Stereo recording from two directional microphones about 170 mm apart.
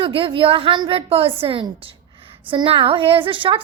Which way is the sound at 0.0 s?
30° right (ahead or behind).